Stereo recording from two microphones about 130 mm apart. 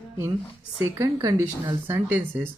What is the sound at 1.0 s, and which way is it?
Speech, 30° right (ahead or behind).